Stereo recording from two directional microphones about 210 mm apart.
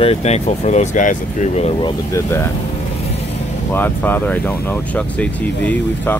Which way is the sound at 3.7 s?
10° left (ahead or behind).